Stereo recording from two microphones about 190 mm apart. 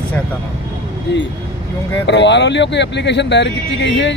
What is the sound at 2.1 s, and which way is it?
Speech, 65° left (ahead or behind).